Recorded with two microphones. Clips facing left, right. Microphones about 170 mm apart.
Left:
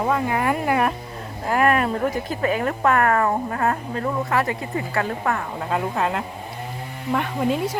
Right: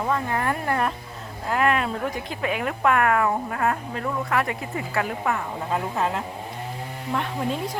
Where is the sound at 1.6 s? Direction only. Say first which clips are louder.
Left 3 dB; 50° left (ahead or behind).